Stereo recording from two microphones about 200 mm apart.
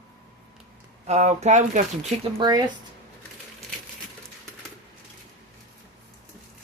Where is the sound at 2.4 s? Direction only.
20° right (ahead or behind).